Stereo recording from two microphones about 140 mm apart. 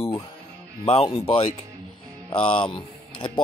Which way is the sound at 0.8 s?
45° left (ahead or behind).